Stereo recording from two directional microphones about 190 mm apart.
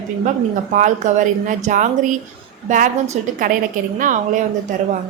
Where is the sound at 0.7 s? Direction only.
40° right (ahead or behind).